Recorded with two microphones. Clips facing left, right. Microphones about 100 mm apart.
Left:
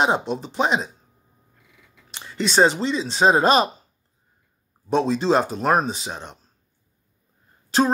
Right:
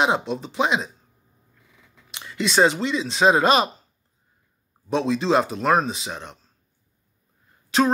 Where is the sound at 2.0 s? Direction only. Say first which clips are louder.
Even; 35° left (ahead or behind).